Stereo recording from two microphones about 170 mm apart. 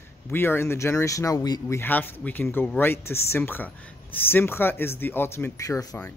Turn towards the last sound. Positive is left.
turn(degrees=20)  # may be behind; listen again after turning